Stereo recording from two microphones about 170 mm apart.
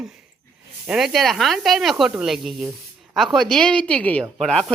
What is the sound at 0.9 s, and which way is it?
A woman's voice, centre (ahead or behind).